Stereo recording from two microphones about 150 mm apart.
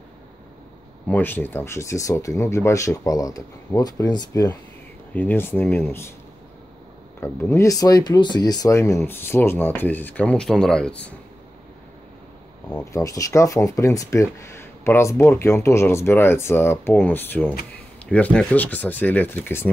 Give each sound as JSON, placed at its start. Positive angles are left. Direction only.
{"t": 1.0, "sound": "speech", "side_deg": 10}
{"t": 5.1, "sound": "speech", "side_deg": 15}
{"t": 7.2, "sound": "speech", "side_deg": 15}
{"t": 12.9, "sound": "speech", "side_deg": 20}